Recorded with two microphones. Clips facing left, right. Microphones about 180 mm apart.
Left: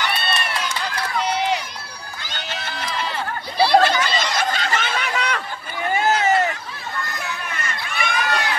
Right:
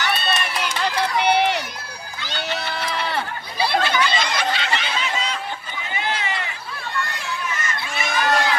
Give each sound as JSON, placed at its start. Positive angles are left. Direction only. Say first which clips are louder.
{"t": 0.8, "sound": "run", "louder": "right 6 dB", "side_deg": -65}
{"t": 2.6, "sound": "run", "louder": "right 1 dB", "side_deg": -60}
{"t": 3.7, "sound": "snicker", "louder": "left 3 dB", "side_deg": 45}
{"t": 5.9, "sound": "a sound", "louder": "left 8 dB", "side_deg": 45}
{"t": 7.5, "sound": "crowd", "louder": "right 1 dB", "side_deg": 60}